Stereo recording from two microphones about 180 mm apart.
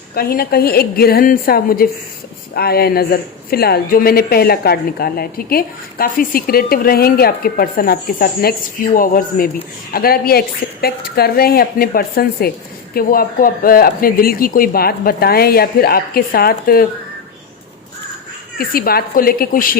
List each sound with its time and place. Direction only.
0.1 s speech: 55° left (ahead or behind)
18.6 s speech: 55° left (ahead or behind)